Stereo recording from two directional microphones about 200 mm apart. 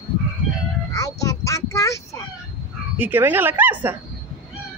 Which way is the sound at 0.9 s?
15° left (ahead or behind).